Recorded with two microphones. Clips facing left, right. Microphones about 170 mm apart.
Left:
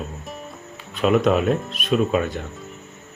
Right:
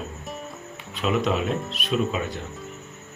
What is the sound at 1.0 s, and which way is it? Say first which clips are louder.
Speech: left 6 dB; 50° left (ahead or behind).